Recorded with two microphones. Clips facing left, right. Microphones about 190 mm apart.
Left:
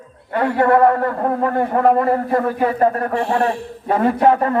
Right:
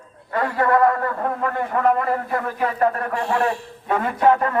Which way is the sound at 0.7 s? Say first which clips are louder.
Left 4 dB; 35° left (ahead or behind).